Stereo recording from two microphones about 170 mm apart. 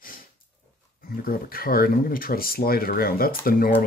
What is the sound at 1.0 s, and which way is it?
Speech, 60° left (ahead or behind).